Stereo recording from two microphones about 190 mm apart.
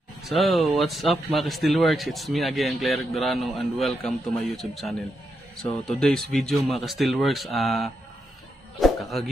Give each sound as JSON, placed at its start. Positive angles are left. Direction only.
{"t": 0.2, "sound": "speech", "side_deg": 0}
{"t": 8.7, "sound": "music", "side_deg": 0}